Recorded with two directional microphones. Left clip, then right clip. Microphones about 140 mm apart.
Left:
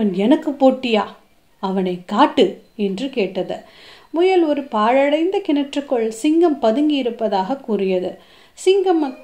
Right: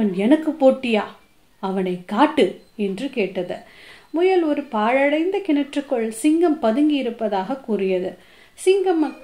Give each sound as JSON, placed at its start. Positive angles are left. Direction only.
{"t": 0.0, "sound": "speech", "side_deg": 45}